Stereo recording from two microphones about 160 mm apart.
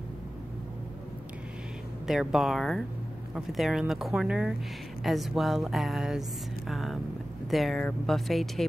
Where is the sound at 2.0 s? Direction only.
Centre (ahead or behind).